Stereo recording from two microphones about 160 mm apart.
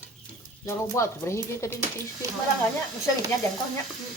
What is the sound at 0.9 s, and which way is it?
Speech, 15° left (ahead or behind).